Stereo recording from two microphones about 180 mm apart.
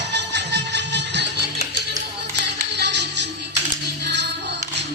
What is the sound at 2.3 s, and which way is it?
Music, 70° right (ahead or behind).